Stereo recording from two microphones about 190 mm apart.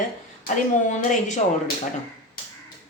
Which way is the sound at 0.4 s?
40° left (ahead or behind).